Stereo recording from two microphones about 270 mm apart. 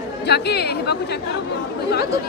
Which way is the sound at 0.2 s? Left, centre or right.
Left.